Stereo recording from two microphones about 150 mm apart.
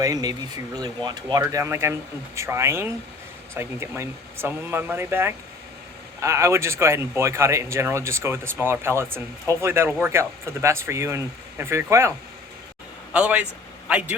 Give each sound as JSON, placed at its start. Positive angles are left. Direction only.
{"t": 0.0, "sound": "speech", "side_deg": -25}
{"t": 13.1, "sound": "speech", "side_deg": -10}